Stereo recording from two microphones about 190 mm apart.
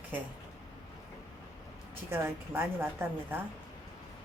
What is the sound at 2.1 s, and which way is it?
Speech, 10° right (ahead or behind).